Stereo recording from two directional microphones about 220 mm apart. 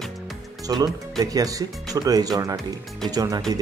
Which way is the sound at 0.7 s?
20° right (ahead or behind).